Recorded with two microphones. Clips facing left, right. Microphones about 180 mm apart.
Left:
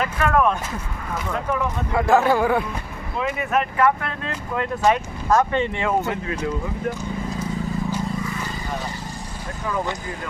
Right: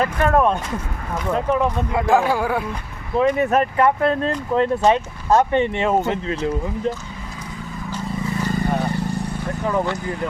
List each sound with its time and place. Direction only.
0.0 s speech: 35° right (ahead or behind)
2.0 s speech: 10° right (ahead or behind)
3.2 s speech: 35° right (ahead or behind)
8.4 s vehicle: 55° right (ahead or behind)